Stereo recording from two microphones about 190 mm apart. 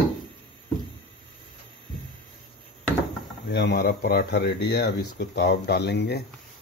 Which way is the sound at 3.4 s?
60° left (ahead or behind).